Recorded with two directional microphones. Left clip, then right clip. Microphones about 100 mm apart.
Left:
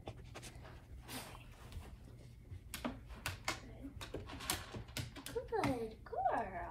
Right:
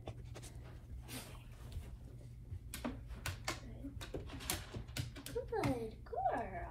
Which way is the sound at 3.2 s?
10° left (ahead or behind).